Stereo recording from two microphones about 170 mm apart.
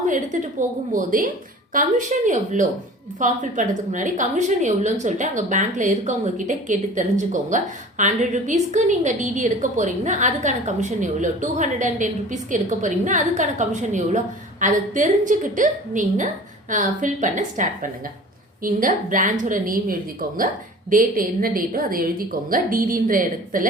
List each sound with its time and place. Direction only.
0.0 s a woman's voice: 45° right (ahead or behind)
1.7 s a woman's voice: 50° right (ahead or behind)